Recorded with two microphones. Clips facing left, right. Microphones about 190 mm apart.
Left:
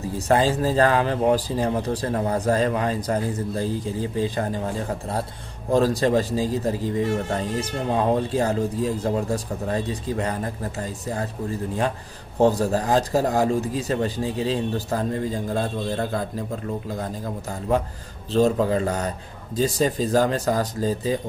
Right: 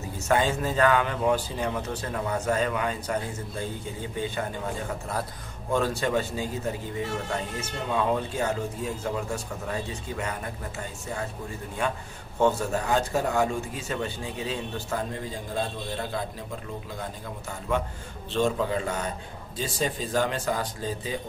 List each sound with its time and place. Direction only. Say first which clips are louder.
0.0 s a man's voice: left 5 dB; 35° left (ahead or behind)
12.4 s a man's voice: left 5 dB; 35° left (ahead or behind)